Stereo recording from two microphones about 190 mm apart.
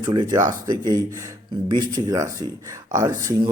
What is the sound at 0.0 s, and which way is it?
A man's voice, 20° right (ahead or behind).